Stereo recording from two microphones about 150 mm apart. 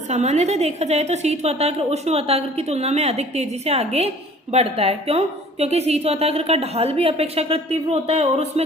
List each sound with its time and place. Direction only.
0.1 s a woman's voice: 50° right (ahead or behind)